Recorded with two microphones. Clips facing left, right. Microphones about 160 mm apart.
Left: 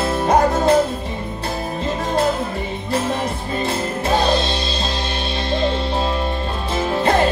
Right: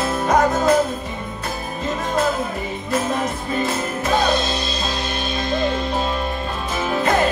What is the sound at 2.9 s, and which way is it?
Music, 30° left (ahead or behind).